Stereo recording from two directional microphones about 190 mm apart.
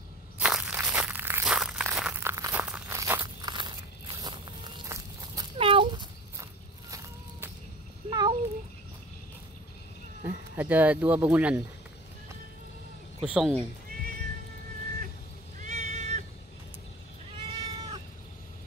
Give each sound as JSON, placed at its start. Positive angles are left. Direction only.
{"t": 0.4, "sound": "a sound", "side_deg": -5}
{"t": 3.5, "sound": "walk", "side_deg": -25}
{"t": 5.6, "sound": "dog", "side_deg": -25}
{"t": 6.9, "sound": "walk", "side_deg": -15}
{"t": 8.1, "sound": "a sound", "side_deg": -20}
{"t": 10.2, "sound": "speech", "side_deg": -10}
{"t": 13.2, "sound": "speech", "side_deg": -5}
{"t": 15.6, "sound": "cat", "side_deg": -40}
{"t": 17.4, "sound": "cat", "side_deg": -30}